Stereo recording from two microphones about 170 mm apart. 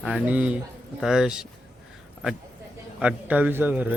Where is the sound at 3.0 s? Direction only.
10° right (ahead or behind).